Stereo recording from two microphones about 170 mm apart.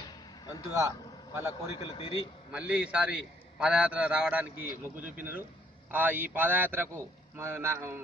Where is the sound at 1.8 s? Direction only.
35° left (ahead or behind).